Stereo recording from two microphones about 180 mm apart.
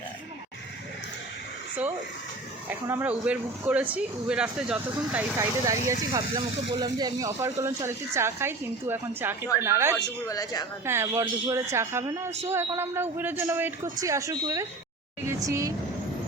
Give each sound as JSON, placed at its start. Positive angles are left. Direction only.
{"t": 2.6, "sound": "speech", "side_deg": -10}
{"t": 6.1, "sound": "speech", "side_deg": -20}
{"t": 10.0, "sound": "speech", "side_deg": 20}
{"t": 10.8, "sound": "speech", "side_deg": -15}